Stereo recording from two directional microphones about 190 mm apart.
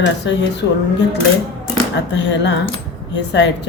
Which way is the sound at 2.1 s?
70° left (ahead or behind).